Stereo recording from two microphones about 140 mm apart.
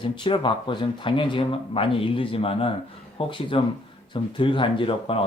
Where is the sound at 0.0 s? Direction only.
35° left (ahead or behind).